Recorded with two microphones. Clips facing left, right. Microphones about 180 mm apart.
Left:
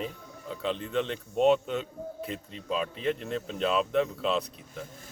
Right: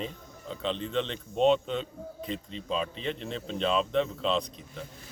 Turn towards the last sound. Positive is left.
turn(degrees=5)  # may be behind; listen again after turning